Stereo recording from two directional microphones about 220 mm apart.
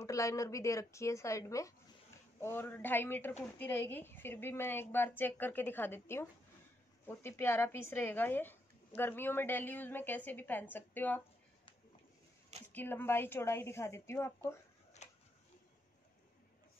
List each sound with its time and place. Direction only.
0.0 s speech: 15° left (ahead or behind)
12.7 s speech: 10° left (ahead or behind)
15.0 s a sound: 30° left (ahead or behind)